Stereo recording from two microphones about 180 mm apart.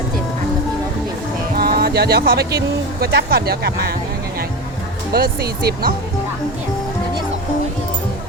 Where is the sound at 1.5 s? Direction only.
60° right (ahead or behind).